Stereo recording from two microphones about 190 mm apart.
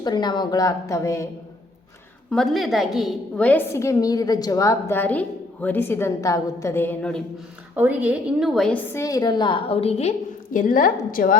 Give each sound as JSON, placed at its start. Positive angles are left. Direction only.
{"t": 0.0, "sound": "a woman's voice", "side_deg": 20}
{"t": 2.3, "sound": "a woman's voice", "side_deg": 0}
{"t": 7.8, "sound": "a woman's voice", "side_deg": -10}
{"t": 8.9, "sound": "a woman's voice", "side_deg": 15}